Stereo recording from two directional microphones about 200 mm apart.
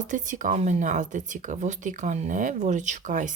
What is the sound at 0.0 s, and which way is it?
Speech, 40° right (ahead or behind).